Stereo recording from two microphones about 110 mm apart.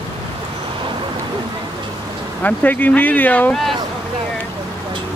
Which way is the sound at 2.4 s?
15° left (ahead or behind).